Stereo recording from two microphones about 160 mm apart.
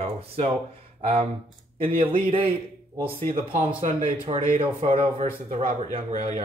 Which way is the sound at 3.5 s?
55° right (ahead or behind).